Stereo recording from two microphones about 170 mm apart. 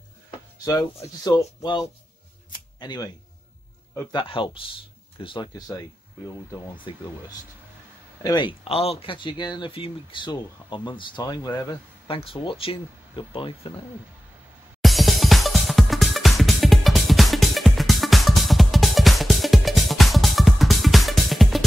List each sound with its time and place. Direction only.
0.7 s speech: 20° left (ahead or behind)
2.5 s camera: 25° left (ahead or behind)
3.9 s speech: 15° left (ahead or behind)
4.2 s speech: 30° left (ahead or behind)
14.8 s music: centre (ahead or behind)